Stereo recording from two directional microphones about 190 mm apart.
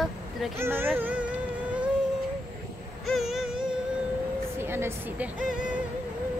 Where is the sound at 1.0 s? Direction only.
10° right (ahead or behind).